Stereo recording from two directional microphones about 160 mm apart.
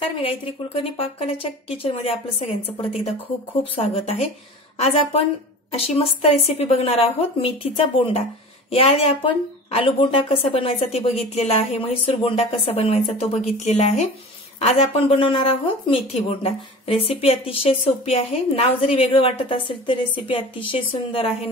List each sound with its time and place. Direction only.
0.8 s a woman's voice: 35° left (ahead or behind)